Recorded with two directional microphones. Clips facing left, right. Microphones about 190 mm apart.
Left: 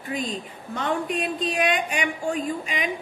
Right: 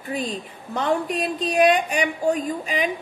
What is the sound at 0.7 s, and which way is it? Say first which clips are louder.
A woman's voice: right 3 dB; 35° right (ahead or behind).